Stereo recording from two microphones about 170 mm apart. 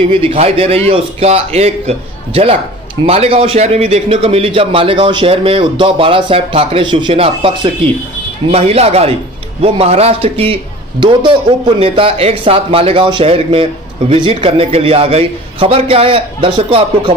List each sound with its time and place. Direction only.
0.0 s a man's voice: 30° right (ahead or behind)